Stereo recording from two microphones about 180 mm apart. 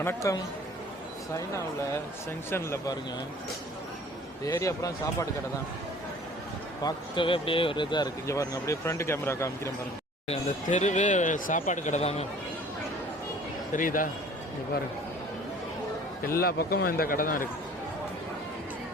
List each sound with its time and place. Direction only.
0.0 s speech: 15° left (ahead or behind)
2.5 s speech: 15° left (ahead or behind)
4.4 s speech: 15° left (ahead or behind)
6.8 s speech: 30° left (ahead or behind)
10.2 s speech: 40° left (ahead or behind)
13.7 s a man's voice: 50° left (ahead or behind)
16.2 s a man's voice: 55° left (ahead or behind)